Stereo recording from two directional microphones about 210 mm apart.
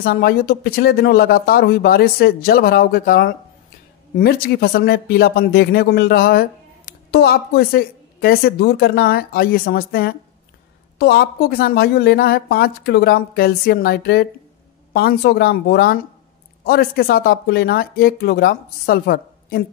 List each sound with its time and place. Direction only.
0.0 s speech: 45° left (ahead or behind)